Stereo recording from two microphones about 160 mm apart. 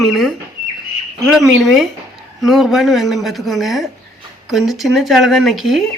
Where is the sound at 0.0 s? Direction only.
Centre (ahead or behind).